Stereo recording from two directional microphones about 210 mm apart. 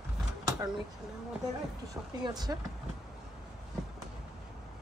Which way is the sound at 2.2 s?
20° right (ahead or behind).